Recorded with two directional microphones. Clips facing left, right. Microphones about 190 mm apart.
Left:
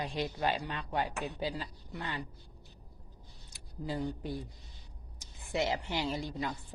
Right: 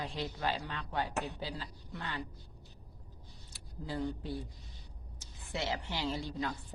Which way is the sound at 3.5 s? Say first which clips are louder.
Left 2 dB; 15° left (ahead or behind).